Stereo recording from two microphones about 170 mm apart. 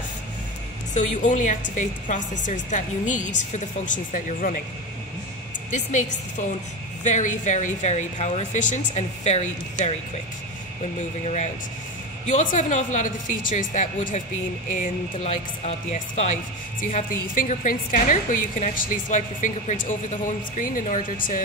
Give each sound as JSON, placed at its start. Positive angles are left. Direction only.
{"t": 0.9, "sound": "a woman's voice", "side_deg": 45}
{"t": 5.7, "sound": "a woman's voice", "side_deg": 45}
{"t": 11.0, "sound": "a woman's voice", "side_deg": 45}
{"t": 16.8, "sound": "a woman's voice", "side_deg": 50}